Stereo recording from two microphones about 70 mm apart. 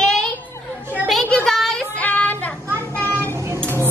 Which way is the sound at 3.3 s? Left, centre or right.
Right.